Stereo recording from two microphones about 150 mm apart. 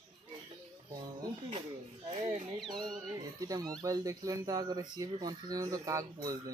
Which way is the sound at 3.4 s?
25° right (ahead or behind).